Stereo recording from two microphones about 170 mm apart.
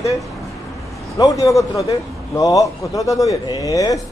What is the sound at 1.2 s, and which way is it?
A man's voice, 20° left (ahead or behind).